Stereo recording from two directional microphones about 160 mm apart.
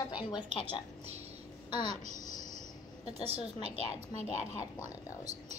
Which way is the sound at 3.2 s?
40° right (ahead or behind).